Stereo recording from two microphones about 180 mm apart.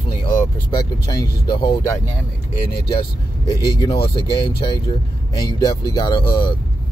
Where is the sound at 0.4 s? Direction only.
20° left (ahead or behind).